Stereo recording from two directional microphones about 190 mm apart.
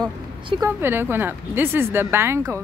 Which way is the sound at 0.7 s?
10° right (ahead or behind).